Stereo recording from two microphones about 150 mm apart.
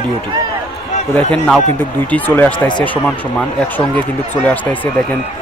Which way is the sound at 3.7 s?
10° left (ahead or behind).